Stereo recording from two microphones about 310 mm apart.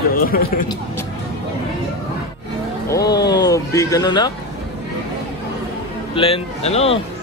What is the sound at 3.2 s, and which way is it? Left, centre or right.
Speech, centre.